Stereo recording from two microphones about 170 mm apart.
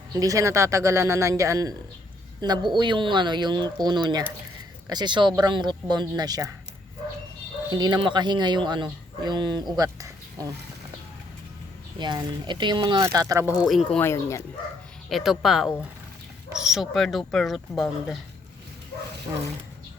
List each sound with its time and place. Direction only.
0.1 s speech: 20° right (ahead or behind)
7.7 s speech: 25° right (ahead or behind)
11.9 s speech: 25° right (ahead or behind)
13.7 s speech: centre (ahead or behind)
14.0 s speech: 15° left (ahead or behind)
15.1 s speech: centre (ahead or behind)